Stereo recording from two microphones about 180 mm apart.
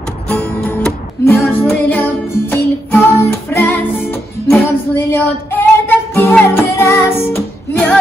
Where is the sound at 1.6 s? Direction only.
10° left (ahead or behind).